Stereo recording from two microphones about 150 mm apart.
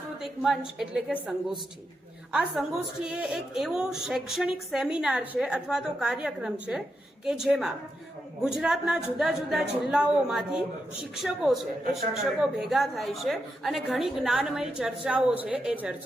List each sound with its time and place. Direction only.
0.2 s a woman's voice: centre (ahead or behind)
2.3 s a woman's voice: 5° right (ahead or behind)